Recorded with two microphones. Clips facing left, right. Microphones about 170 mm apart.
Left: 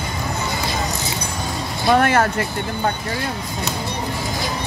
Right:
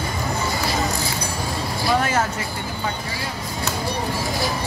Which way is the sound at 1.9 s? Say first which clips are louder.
Left 5 dB; 60° left (ahead or behind).